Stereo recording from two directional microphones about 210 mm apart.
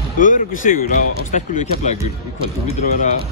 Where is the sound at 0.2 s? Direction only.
40° left (ahead or behind).